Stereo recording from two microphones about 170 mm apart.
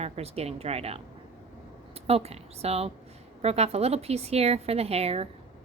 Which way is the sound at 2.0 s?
35° right (ahead or behind).